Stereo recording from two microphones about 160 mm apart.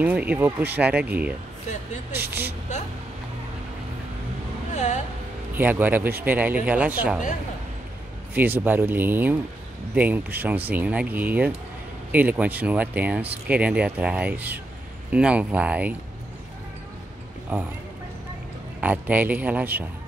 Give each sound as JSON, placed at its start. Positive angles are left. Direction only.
{"t": 0.0, "sound": "speech", "side_deg": -10}
{"t": 4.7, "sound": "speech", "side_deg": 50}
{"t": 5.5, "sound": "speech", "side_deg": -10}
{"t": 8.4, "sound": "speech", "side_deg": -10}
{"t": 17.5, "sound": "speech", "side_deg": -10}
{"t": 18.8, "sound": "speech", "side_deg": -10}